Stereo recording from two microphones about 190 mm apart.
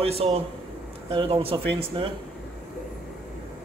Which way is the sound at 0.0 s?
30° right (ahead or behind).